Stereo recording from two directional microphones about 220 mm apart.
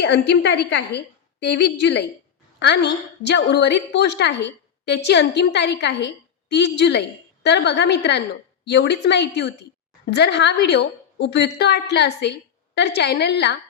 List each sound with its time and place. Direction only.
0.0 s a woman's voice: 55° left (ahead or behind)